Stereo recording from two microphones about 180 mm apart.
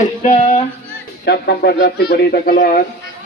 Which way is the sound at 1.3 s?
65° left (ahead or behind).